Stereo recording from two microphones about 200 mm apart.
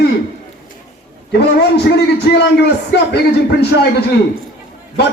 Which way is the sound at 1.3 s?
55° left (ahead or behind).